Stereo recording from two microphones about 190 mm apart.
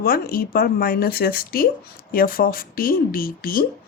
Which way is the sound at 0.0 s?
50° left (ahead or behind).